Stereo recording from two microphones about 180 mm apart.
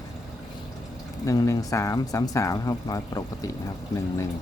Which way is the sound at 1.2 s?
15° left (ahead or behind).